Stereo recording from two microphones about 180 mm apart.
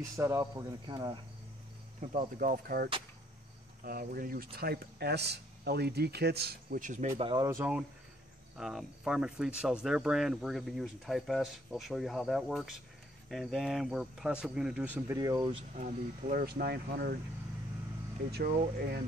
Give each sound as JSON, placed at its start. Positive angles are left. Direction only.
{"t": 0.2, "sound": "speech", "side_deg": -20}
{"t": 2.0, "sound": "speech", "side_deg": -50}
{"t": 7.4, "sound": "speech", "side_deg": -10}
{"t": 15.1, "sound": "speech", "side_deg": -20}
{"t": 15.7, "sound": "speech", "side_deg": -45}
{"t": 18.8, "sound": "speech", "side_deg": -60}